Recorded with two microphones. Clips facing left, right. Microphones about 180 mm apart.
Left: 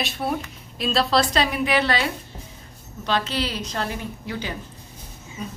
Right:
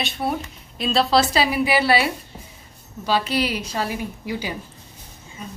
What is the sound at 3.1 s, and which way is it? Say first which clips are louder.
A woman's voice: right 3 dB; 10° right (ahead or behind).